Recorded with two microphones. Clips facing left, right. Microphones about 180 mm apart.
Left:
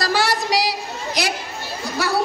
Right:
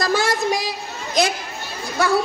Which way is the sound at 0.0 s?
50° right (ahead or behind).